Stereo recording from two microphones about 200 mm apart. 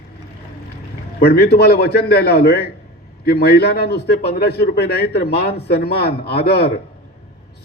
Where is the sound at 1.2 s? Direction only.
50° left (ahead or behind).